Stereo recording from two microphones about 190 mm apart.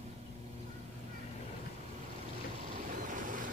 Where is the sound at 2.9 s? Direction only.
45° right (ahead or behind).